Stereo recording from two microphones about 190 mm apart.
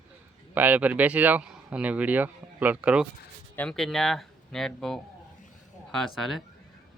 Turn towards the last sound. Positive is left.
turn(degrees=0)  # may be behind; listen again after turning